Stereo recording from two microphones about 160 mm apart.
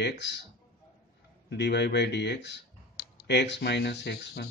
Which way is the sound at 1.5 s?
90° left.